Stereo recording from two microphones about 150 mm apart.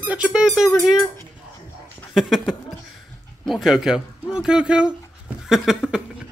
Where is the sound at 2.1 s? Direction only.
Centre (ahead or behind).